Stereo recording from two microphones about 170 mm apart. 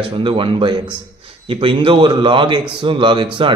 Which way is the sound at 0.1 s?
30° right (ahead or behind).